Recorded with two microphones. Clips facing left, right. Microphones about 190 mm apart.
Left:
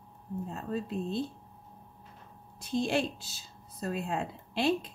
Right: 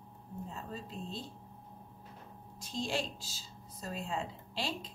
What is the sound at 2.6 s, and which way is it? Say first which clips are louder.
Speech: left 7 dB; 60° left (ahead or behind).